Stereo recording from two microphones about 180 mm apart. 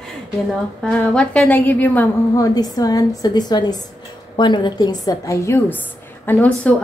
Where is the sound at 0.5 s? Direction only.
5° left (ahead or behind).